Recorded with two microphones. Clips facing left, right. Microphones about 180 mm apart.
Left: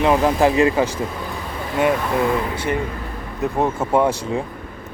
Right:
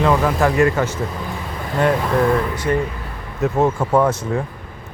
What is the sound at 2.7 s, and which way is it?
Speech, 15° left (ahead or behind).